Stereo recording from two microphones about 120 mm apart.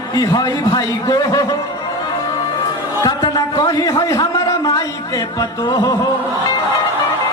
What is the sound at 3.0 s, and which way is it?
A man's voice, 35° left (ahead or behind).